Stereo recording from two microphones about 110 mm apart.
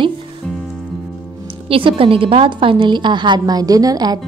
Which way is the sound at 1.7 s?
55° right (ahead or behind).